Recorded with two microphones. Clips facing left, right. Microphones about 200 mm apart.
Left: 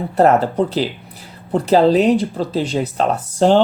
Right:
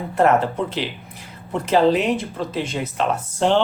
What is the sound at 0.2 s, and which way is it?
Speech, 35° left (ahead or behind).